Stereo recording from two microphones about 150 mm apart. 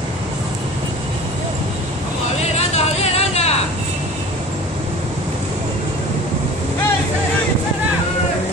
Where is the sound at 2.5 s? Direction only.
45° left (ahead or behind).